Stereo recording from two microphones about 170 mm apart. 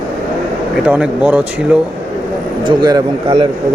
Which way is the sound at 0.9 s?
10° right (ahead or behind).